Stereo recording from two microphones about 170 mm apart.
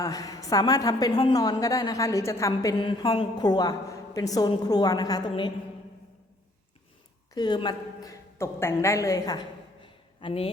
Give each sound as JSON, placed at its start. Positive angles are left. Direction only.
{"t": 0.0, "sound": "a woman's voice", "side_deg": 20}
{"t": 7.3, "sound": "a woman's voice", "side_deg": 25}
{"t": 9.8, "sound": "a sound", "side_deg": 30}